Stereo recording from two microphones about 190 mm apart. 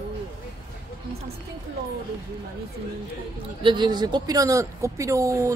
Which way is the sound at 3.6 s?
25° right (ahead or behind).